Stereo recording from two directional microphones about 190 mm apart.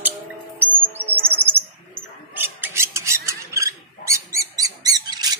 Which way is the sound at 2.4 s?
10° right (ahead or behind).